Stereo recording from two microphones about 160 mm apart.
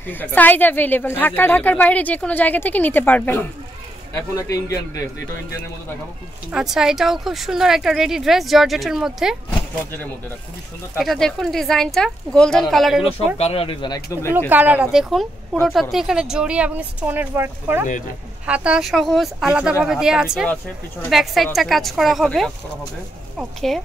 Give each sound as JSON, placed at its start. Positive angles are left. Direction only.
{"t": 0.0, "sound": "a woman's voice", "side_deg": 10}
{"t": 6.5, "sound": "speech", "side_deg": -5}
{"t": 11.0, "sound": "speech", "side_deg": 0}
{"t": 13.4, "sound": "speech", "side_deg": 35}
{"t": 14.5, "sound": "speech", "side_deg": -10}